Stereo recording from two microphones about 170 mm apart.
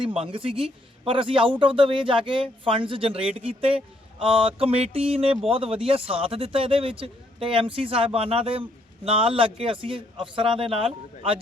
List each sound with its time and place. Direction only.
0.0 s a man's voice: 30° right (ahead or behind)